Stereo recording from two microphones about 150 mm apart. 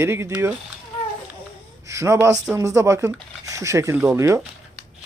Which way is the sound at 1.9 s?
20° right (ahead or behind).